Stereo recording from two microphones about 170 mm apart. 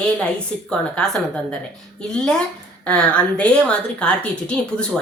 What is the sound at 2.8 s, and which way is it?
A woman's voice, 5° left (ahead or behind).